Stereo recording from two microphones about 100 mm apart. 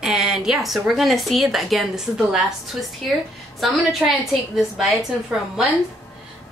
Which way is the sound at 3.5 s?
Centre (ahead or behind).